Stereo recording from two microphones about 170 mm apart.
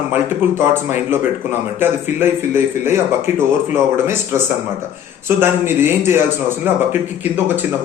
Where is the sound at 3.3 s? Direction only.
45° left (ahead or behind).